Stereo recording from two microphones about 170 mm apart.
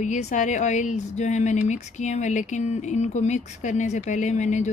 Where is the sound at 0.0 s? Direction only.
45° left (ahead or behind).